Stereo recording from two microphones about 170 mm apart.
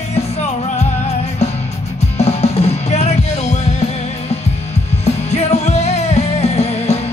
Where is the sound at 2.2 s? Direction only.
40° left (ahead or behind).